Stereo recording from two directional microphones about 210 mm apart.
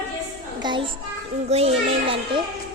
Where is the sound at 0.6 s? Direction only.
20° right (ahead or behind).